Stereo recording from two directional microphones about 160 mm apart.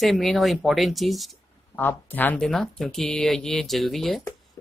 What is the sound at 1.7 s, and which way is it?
Speech, 10° left (ahead or behind).